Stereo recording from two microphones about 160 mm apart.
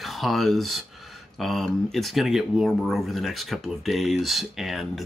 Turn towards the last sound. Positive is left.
turn(degrees=0)  # may be behind; listen again after turning